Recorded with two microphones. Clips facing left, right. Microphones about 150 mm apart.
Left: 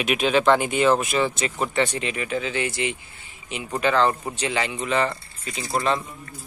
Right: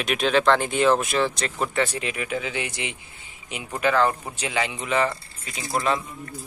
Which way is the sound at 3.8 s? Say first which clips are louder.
Even; 5° right (ahead or behind).